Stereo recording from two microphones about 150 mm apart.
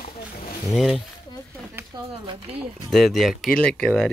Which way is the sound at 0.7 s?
Centre (ahead or behind).